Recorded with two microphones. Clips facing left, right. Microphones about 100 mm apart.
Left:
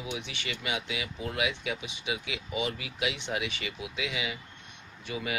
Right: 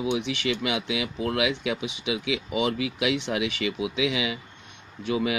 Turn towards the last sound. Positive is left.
turn(degrees=-90)